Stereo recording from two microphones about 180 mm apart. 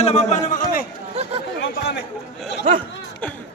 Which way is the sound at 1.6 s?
75° left (ahead or behind).